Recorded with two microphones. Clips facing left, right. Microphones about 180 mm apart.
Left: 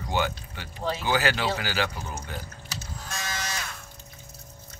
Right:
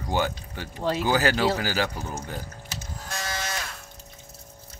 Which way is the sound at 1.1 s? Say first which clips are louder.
Right 2 dB; 45° right (ahead or behind).